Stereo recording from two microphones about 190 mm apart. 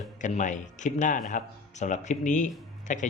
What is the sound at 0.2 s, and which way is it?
Speech, 40° left (ahead or behind).